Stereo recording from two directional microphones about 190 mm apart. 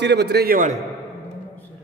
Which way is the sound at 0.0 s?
60° right (ahead or behind).